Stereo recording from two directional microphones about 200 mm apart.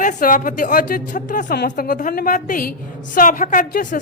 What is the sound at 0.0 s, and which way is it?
Speech, 40° left (ahead or behind).